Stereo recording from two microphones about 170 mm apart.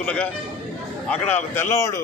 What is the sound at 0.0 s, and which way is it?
Speech, 5° left (ahead or behind).